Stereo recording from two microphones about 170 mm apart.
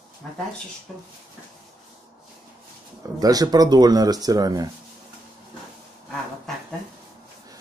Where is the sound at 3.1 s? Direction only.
20° right (ahead or behind).